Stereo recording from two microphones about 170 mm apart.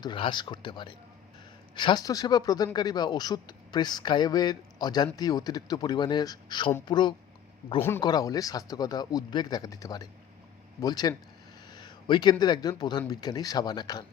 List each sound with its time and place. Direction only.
0.0 s a man's voice: 25° left (ahead or behind)
7.8 s a man's voice: 15° left (ahead or behind)